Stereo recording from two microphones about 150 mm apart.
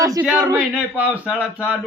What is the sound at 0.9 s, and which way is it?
Speech, 10° right (ahead or behind).